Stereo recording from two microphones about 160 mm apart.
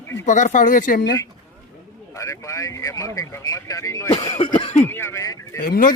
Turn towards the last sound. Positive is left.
turn(degrees=60)  # may be behind; listen again after turning